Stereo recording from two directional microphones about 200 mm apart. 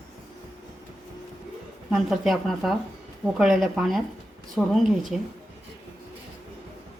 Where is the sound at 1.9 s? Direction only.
Centre (ahead or behind).